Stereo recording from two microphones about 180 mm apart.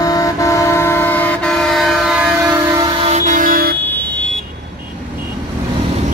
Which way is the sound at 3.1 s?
40° right (ahead or behind).